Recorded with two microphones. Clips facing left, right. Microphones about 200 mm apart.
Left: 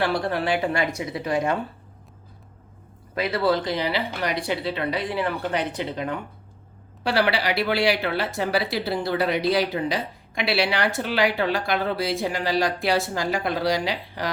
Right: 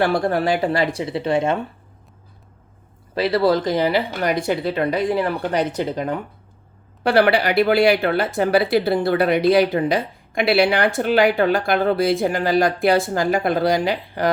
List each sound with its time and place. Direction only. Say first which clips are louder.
0.0 s speech: right 5 dB; 45° right (ahead or behind); by 1.5 s 25° right (ahead or behind)
3.2 s speech: right 5 dB; 35° right (ahead or behind)
7.0 s speech: right 6 dB; 55° right (ahead or behind)